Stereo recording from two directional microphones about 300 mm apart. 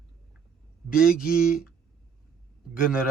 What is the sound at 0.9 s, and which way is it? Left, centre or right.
Speech, centre.